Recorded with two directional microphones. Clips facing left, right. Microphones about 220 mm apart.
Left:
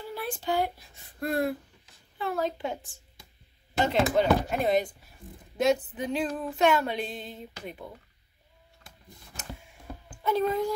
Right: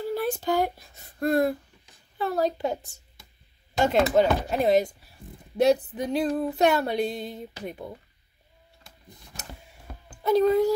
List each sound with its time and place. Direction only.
0.0 s speech: 40° right (ahead or behind)
2.1 s female singing: 40° right (ahead or behind)
10.0 s a sound: 40° right (ahead or behind)